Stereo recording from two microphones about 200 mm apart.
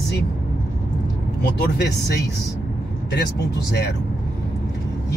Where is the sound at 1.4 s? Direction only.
55° left (ahead or behind).